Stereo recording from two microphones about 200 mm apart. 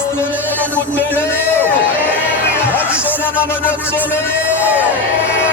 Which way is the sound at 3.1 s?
10° left (ahead or behind).